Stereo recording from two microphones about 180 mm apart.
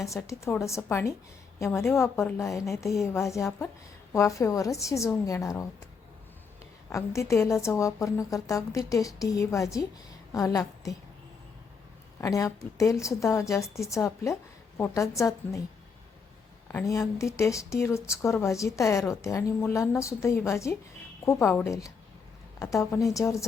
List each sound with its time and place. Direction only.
0.0 s a woman's voice: 15° left (ahead or behind)
6.9 s a woman's voice: 15° left (ahead or behind)
12.2 s a woman's voice: 15° left (ahead or behind)
16.7 s a woman's voice: 15° left (ahead or behind)